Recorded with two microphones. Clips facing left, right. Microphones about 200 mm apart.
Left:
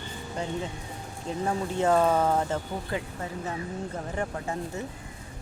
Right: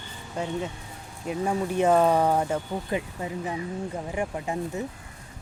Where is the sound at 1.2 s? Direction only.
15° right (ahead or behind).